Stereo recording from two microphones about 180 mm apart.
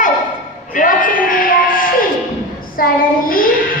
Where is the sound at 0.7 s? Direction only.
50° left (ahead or behind).